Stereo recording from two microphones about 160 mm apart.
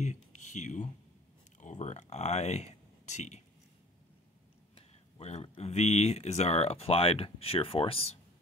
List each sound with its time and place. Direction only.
0.0 s speech: 50° left (ahead or behind)
4.7 s speech: 40° left (ahead or behind)